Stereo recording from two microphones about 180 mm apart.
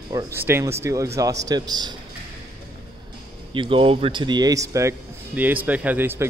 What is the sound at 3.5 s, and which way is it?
A man's voice, 30° right (ahead or behind).